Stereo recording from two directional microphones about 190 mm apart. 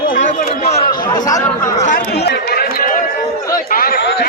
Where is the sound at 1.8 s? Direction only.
50° left (ahead or behind).